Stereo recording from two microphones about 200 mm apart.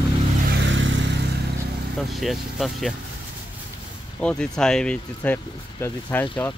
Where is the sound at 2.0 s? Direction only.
Centre (ahead or behind).